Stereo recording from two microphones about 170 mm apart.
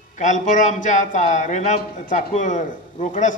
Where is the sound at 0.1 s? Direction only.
45° left (ahead or behind).